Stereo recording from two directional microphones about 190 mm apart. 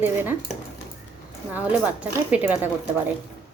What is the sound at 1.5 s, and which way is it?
A woman's voice, 5° right (ahead or behind).